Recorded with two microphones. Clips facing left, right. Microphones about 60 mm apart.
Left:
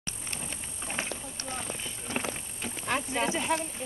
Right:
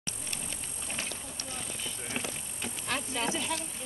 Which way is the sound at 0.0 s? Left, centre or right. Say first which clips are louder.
Left 1 dB; left.